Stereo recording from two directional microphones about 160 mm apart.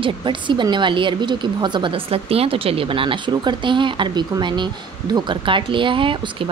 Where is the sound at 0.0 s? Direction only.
30° right (ahead or behind).